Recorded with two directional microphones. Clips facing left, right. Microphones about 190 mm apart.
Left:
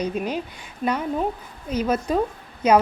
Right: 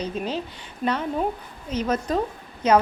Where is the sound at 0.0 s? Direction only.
10° left (ahead or behind).